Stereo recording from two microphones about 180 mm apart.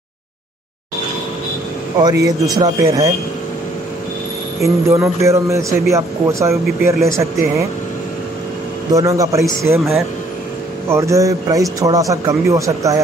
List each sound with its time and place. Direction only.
2.0 s speech: 20° right (ahead or behind)
4.6 s a man's voice: 15° right (ahead or behind)
8.9 s a man's voice: 20° right (ahead or behind)
10.9 s a man's voice: 15° right (ahead or behind)